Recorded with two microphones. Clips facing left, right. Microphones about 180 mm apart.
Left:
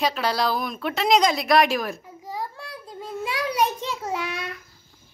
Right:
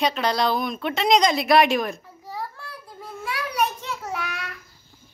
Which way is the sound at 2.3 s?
15° left (ahead or behind).